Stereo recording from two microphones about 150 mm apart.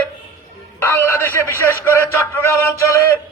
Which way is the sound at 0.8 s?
15° left (ahead or behind).